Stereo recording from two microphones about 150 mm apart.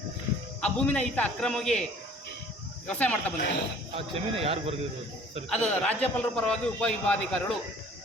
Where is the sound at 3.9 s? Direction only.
40° right (ahead or behind).